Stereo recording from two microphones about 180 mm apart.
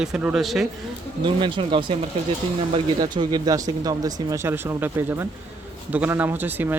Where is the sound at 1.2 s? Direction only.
25° right (ahead or behind).